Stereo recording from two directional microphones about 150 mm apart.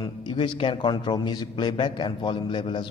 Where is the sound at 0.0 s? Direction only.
30° left (ahead or behind).